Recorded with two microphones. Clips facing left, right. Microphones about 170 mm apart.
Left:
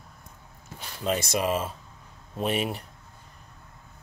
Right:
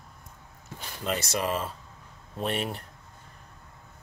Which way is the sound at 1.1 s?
20° left (ahead or behind).